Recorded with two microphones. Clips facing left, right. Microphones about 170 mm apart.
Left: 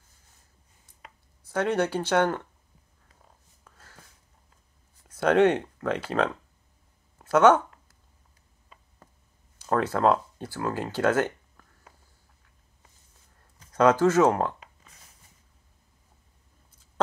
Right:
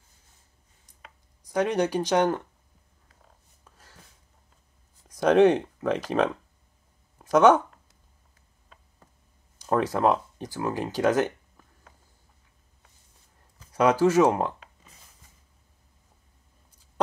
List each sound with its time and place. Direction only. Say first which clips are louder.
1.4 s speech: right 1 dB; 15° right (ahead or behind)
3.6 s a sound: left 1 dB; 15° right (ahead or behind)
5.0 s speech: right 2 dB; 15° right (ahead or behind)
9.8 s speech: even; 15° right (ahead or behind)
13.7 s speech: left 1 dB; 10° right (ahead or behind)